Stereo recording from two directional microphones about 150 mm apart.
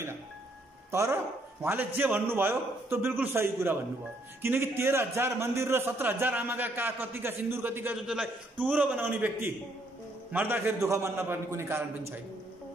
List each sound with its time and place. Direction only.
0.9 s a man's voice: 20° right (ahead or behind)